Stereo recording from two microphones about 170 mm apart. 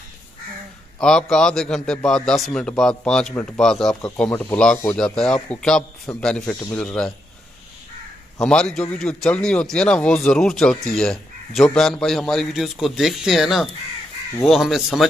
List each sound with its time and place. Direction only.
0.9 s speech: 5° left (ahead or behind)
8.4 s speech: 5° left (ahead or behind)